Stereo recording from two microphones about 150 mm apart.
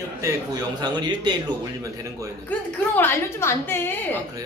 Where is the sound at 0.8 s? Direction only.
30° right (ahead or behind).